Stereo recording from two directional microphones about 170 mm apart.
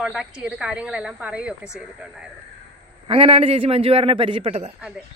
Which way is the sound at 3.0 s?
35° right (ahead or behind).